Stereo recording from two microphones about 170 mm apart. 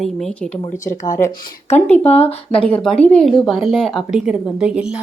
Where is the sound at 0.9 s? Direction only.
20° left (ahead or behind).